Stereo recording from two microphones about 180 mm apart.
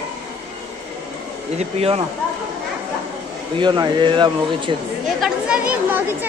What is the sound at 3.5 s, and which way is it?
Speech, 25° right (ahead or behind).